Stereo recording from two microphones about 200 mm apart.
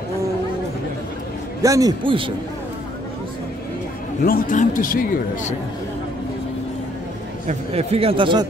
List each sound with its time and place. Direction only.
1.6 s speech: 15° right (ahead or behind)
4.2 s a man's voice: 45° left (ahead or behind)
7.4 s speech: 30° right (ahead or behind)